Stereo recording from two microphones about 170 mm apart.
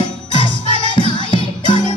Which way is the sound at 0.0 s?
30° left (ahead or behind).